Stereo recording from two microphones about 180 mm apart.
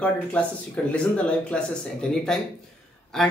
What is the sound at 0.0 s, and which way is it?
A man's voice, 5° left (ahead or behind).